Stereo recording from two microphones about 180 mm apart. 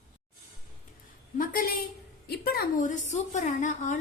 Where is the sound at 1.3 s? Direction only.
55° left (ahead or behind).